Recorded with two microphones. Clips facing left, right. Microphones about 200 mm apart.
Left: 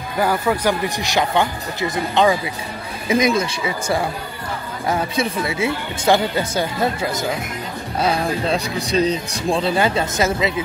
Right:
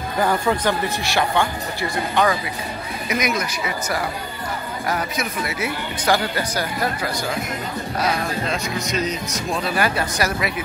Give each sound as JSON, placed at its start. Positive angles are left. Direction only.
{"t": 0.2, "sound": "speech", "side_deg": 5}